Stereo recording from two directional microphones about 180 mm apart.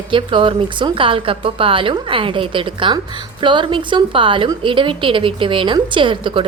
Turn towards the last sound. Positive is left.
turn(degrees=-30)  # may be behind; listen again after turning